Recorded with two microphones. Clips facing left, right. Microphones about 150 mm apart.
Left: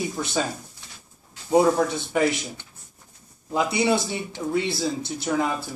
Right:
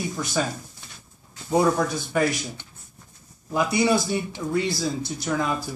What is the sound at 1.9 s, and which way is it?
Speech, 20° left (ahead or behind).